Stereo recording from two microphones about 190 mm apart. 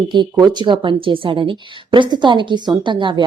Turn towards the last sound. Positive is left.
turn(degrees=-25)  # may be behind; listen again after turning